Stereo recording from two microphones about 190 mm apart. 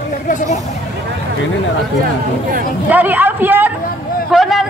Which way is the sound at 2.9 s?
10° right (ahead or behind).